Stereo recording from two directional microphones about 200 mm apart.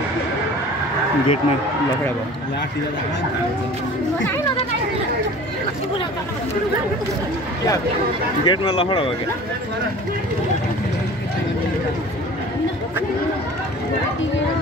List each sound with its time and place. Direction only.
8.5 s speech: 25° left (ahead or behind)